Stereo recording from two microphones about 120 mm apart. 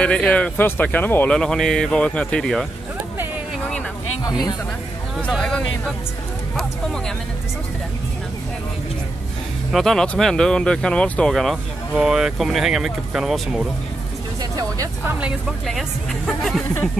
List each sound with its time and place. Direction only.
0.0 s speech: 10° left (ahead or behind)
5.4 s speech: 5° left (ahead or behind)
9.7 s speech: centre (ahead or behind)
14.4 s speech: 30° right (ahead or behind)
15.0 s speech: 10° right (ahead or behind)
15.6 s speech: centre (ahead or behind)